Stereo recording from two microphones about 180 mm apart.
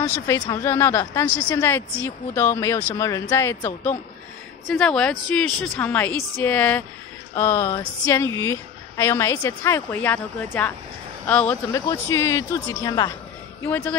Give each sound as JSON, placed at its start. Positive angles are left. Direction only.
{"t": 0.0, "sound": "a woman's voice", "side_deg": 15}